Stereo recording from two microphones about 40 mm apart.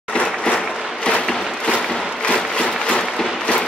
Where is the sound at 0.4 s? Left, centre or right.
Left.